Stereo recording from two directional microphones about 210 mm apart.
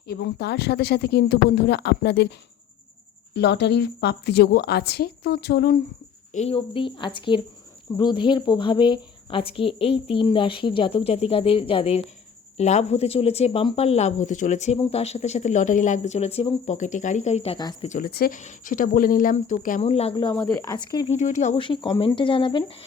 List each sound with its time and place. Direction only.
0.1 s speech: 50° left (ahead or behind)
3.3 s speech: 55° left (ahead or behind)
6.3 s a woman's voice: 30° left (ahead or behind)
17.8 s a woman's voice: 40° left (ahead or behind); by 21.1 s 20° left (ahead or behind)
21.1 s a woman's voice: 35° left (ahead or behind)